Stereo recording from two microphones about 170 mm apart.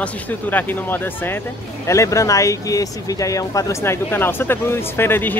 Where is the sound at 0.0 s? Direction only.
10° left (ahead or behind).